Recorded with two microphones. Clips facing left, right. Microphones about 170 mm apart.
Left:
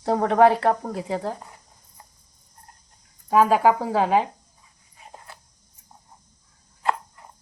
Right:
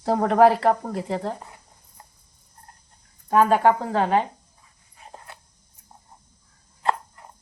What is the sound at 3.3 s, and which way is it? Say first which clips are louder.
Speech: even; 5° left (ahead or behind).